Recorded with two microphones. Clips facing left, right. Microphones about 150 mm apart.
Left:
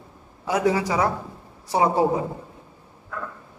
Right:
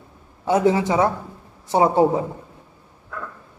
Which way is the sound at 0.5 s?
25° right (ahead or behind).